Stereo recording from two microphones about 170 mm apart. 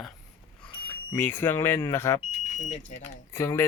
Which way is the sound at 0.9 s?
10° left (ahead or behind).